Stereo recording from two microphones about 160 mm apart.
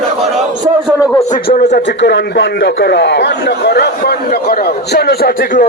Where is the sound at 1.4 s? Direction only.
80° left.